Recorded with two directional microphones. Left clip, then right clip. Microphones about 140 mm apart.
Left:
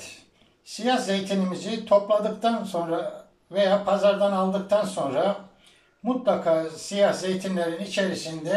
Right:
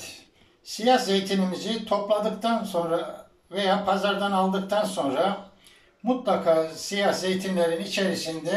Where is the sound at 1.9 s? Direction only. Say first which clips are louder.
Left 4 dB; 15° left (ahead or behind).